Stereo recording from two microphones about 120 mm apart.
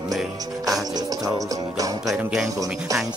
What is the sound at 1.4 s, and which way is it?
Music, 30° right (ahead or behind).